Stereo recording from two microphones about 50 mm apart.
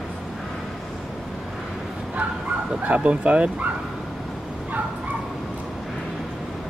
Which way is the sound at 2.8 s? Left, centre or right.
Right.